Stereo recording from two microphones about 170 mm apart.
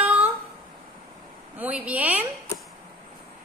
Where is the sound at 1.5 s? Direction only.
10° right (ahead or behind).